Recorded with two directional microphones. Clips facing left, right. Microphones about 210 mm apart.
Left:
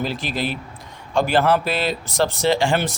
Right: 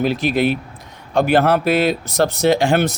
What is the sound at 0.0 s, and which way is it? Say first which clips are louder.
Speech: right 8 dB; 55° right (ahead or behind).